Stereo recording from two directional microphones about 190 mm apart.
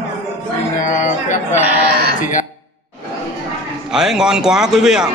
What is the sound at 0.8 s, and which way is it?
Speech, 40° left (ahead or behind).